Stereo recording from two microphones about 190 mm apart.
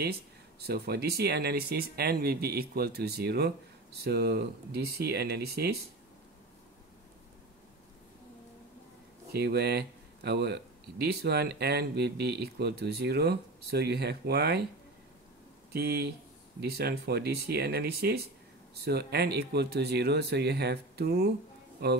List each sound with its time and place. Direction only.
0.0 s speech: 55° right (ahead or behind)
9.3 s speech: 60° right (ahead or behind)
15.7 s speech: 55° right (ahead or behind)